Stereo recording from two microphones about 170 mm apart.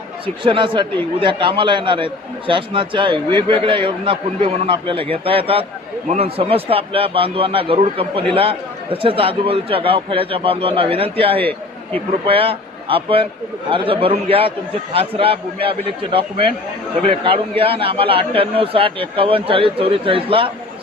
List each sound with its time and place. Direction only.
0.4 s a man's voice: 30° right (ahead or behind)